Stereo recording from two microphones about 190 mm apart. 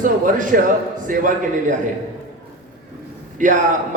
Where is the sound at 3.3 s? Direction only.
45° right (ahead or behind).